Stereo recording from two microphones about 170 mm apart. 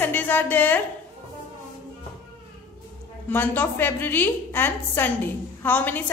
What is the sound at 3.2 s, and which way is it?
A woman's voice, 10° left (ahead or behind).